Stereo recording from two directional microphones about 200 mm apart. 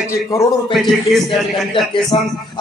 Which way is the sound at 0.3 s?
15° left (ahead or behind).